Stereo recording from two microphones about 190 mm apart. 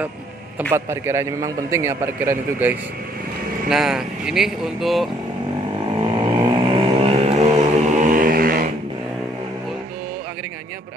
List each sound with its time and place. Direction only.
0.6 s a man's voice: 10° right (ahead or behind)
5.9 s vehicle: 25° right (ahead or behind); by 8.7 s 50° right (ahead or behind)